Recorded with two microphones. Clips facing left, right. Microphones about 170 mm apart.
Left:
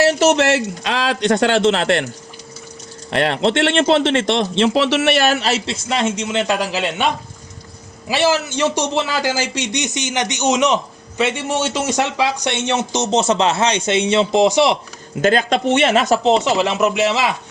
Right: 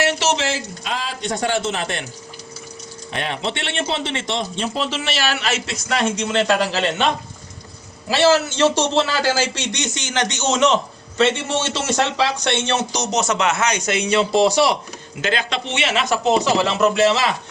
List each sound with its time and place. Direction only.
0.0 s speech: 45° left (ahead or behind); by 2.0 s 75° left (ahead or behind)
3.1 s speech: 70° left (ahead or behind); by 7.1 s 10° left (ahead or behind)
8.1 s a man's voice: 15° left (ahead or behind)
15.2 s speech: 45° left (ahead or behind)
16.2 s a man's voice: 25° left (ahead or behind)